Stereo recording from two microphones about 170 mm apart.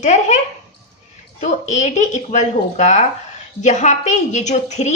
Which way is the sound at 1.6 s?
45° left (ahead or behind).